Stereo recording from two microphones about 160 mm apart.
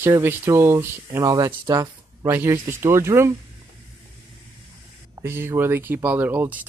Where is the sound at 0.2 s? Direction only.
15° right (ahead or behind).